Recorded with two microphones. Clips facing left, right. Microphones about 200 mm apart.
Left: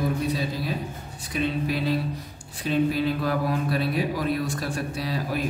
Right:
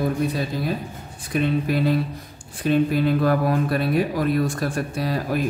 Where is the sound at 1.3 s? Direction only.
50° right (ahead or behind).